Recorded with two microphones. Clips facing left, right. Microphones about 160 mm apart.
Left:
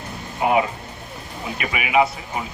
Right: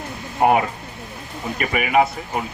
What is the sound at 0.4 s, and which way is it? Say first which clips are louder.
A man's voice: right 2 dB; 55° right (ahead or behind).